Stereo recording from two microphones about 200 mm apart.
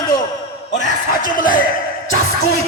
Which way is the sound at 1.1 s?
45° left (ahead or behind).